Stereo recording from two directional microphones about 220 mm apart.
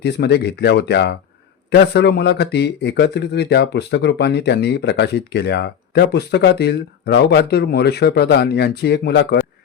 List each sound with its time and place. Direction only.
0.0 s speech: 50° left (ahead or behind)